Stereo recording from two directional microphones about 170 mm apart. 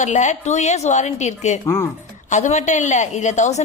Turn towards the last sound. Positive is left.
turn(degrees=45)  # may be behind; listen again after turning